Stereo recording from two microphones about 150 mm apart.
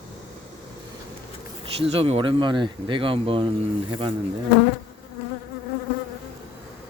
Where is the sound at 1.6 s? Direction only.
40° right (ahead or behind).